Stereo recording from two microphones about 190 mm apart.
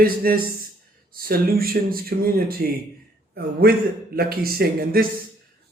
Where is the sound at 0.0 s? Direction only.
50° right (ahead or behind).